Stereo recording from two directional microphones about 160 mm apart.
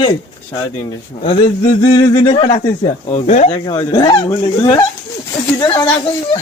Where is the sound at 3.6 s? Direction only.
30° left (ahead or behind).